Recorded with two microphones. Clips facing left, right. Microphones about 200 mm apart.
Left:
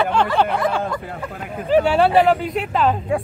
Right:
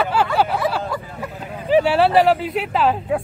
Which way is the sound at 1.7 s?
5° right (ahead or behind).